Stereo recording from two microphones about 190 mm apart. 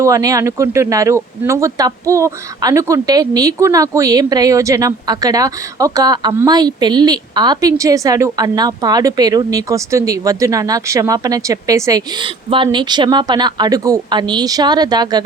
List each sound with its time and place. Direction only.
0.0 s speech: 15° right (ahead or behind)